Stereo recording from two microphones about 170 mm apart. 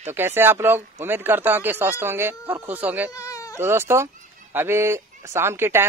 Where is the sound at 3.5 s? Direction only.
15° right (ahead or behind).